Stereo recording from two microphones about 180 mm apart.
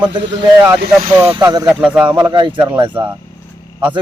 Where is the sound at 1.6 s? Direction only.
5° right (ahead or behind).